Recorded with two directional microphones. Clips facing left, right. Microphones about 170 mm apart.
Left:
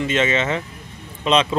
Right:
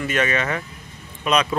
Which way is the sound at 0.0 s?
20° left (ahead or behind).